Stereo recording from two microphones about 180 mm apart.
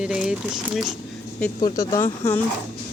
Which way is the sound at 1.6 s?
20° left (ahead or behind).